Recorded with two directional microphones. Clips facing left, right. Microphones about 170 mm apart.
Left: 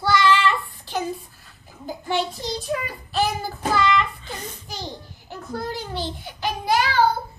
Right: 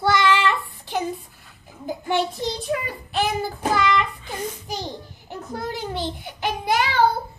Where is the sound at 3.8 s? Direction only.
15° right (ahead or behind).